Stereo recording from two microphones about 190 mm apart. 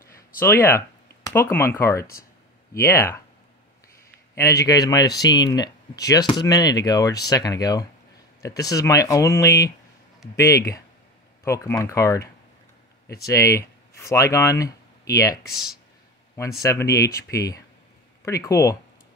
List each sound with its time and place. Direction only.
0.4 s speech: 10° left (ahead or behind)
4.4 s speech: 15° left (ahead or behind)
13.2 s speech: 15° left (ahead or behind)
15.5 s speech: centre (ahead or behind)
16.6 s speech: 15° left (ahead or behind)